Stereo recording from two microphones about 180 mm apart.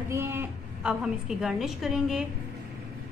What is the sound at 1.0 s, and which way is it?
A woman's voice, 5° right (ahead or behind).